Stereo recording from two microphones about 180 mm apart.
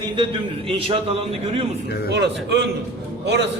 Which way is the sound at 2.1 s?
75° right (ahead or behind).